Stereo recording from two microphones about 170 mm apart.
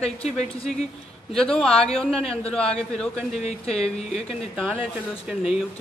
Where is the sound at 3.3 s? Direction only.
40° left (ahead or behind).